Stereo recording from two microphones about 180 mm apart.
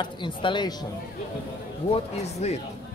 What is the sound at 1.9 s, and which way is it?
Speech, 35° left (ahead or behind).